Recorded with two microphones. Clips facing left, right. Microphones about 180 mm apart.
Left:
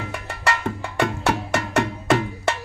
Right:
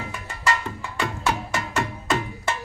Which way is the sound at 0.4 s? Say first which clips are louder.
Left 1 dB; 60° left (ahead or behind).